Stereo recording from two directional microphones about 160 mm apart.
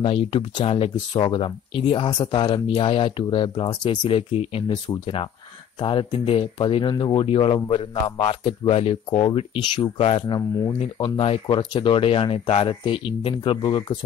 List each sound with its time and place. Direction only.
0.0 s speech: 35° left (ahead or behind)